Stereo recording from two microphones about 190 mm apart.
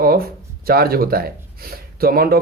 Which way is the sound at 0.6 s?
50° right (ahead or behind).